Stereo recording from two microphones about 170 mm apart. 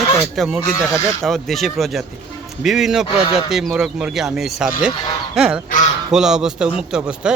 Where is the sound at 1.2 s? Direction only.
Centre (ahead or behind).